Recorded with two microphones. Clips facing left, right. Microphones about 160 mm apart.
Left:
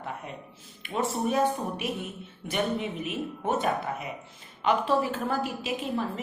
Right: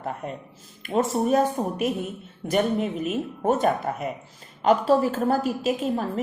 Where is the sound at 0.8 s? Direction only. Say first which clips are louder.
Right 6 dB; 45° right (ahead or behind).